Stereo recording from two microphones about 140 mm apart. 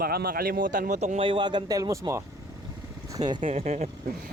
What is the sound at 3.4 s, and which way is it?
Speech, 50° right (ahead or behind).